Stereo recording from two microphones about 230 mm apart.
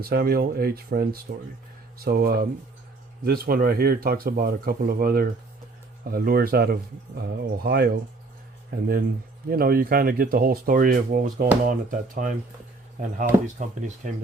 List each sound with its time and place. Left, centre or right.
0.0 s speech: right
9.5 s speech: right